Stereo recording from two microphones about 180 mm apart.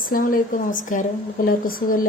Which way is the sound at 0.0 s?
50° left (ahead or behind).